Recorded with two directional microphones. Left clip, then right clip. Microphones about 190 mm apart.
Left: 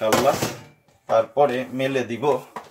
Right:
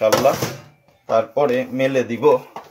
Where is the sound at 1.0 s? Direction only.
45° right (ahead or behind).